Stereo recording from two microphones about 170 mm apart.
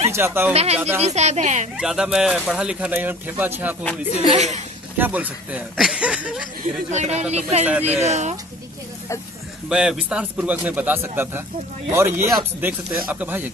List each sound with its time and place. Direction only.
0.1 s speech: 15° right (ahead or behind)
0.5 s speech: 35° right (ahead or behind)
1.8 s speech: 5° right (ahead or behind)
4.3 s speech: 40° right (ahead or behind)
4.9 s speech: 10° right (ahead or behind)
6.9 s speech: 40° right (ahead or behind)
9.7 s a man's voice: 5° right (ahead or behind)